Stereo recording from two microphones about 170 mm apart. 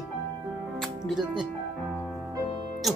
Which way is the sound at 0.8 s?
Centre (ahead or behind).